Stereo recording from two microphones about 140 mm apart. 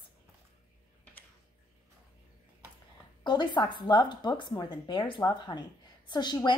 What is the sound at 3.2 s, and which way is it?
A woman's voice, 35° left (ahead or behind).